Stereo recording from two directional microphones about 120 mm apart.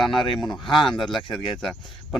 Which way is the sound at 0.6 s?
40° left (ahead or behind).